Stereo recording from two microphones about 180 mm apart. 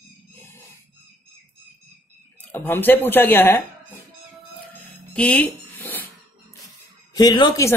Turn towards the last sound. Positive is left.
turn(degrees=20)  # may be behind; listen again after turning